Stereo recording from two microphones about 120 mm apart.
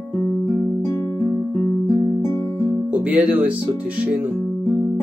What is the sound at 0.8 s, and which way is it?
Music, 25° left (ahead or behind).